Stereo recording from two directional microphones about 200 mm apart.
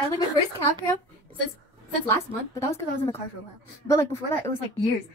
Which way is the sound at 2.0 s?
10° left (ahead or behind).